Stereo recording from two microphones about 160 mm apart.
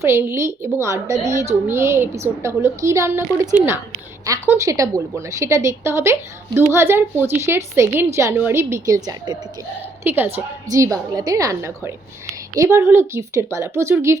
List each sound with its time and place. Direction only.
0.0 s a woman's voice: 15° right (ahead or behind)